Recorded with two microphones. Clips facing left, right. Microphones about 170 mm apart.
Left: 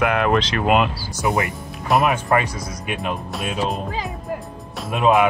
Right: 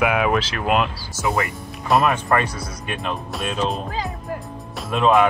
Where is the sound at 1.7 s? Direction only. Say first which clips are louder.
Right 1 dB; centre (ahead or behind).